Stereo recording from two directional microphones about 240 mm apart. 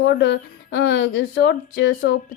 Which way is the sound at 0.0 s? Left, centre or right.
Left.